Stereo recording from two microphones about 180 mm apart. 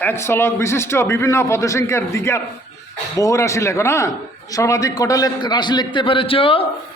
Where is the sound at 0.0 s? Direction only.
15° left (ahead or behind).